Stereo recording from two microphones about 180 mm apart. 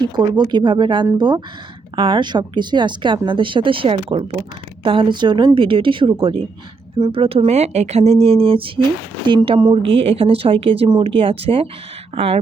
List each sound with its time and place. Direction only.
0.0 s a woman's voice: 25° right (ahead or behind)